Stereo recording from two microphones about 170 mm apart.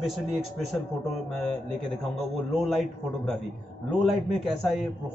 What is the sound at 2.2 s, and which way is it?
A man's voice, centre (ahead or behind).